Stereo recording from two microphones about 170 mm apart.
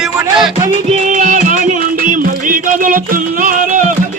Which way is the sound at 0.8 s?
45° right (ahead or behind).